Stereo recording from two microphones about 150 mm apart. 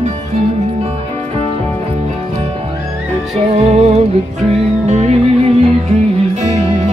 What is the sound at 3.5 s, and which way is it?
Music, 45° right (ahead or behind).